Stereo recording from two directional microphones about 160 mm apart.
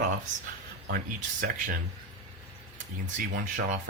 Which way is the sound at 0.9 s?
60° right (ahead or behind).